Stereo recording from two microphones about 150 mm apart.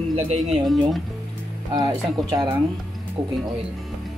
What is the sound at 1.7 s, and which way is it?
Speech, 25° right (ahead or behind).